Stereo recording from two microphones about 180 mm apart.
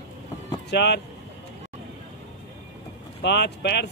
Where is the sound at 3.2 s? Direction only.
70° left (ahead or behind).